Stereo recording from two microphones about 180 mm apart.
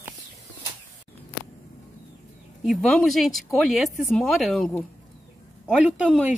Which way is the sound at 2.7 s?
5° left (ahead or behind).